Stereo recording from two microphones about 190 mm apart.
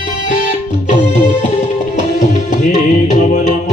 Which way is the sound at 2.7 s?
40° left (ahead or behind).